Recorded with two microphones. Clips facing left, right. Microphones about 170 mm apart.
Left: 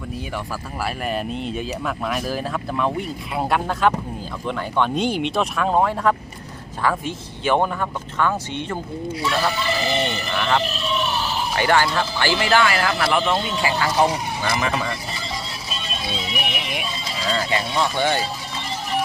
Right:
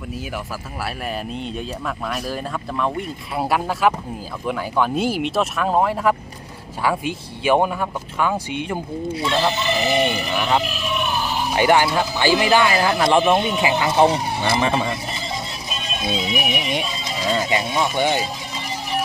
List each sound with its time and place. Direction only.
0.9 s speech: centre (ahead or behind)
9.1 s speech: 25° right (ahead or behind)
16.3 s speech: 5° right (ahead or behind)